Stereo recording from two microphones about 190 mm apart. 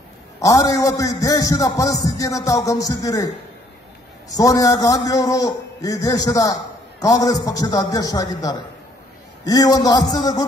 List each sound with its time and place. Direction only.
0.4 s a man's voice: 20° left (ahead or behind)
4.3 s a man's voice: 20° left (ahead or behind)